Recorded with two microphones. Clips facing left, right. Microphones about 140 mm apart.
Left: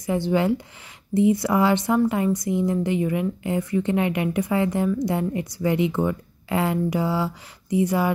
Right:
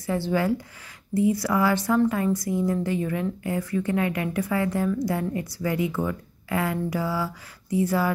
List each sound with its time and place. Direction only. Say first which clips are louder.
0.0 s a woman's voice: left 3 dB; 15° left (ahead or behind)